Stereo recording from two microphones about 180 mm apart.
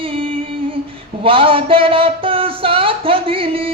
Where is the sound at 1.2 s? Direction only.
30° right (ahead or behind).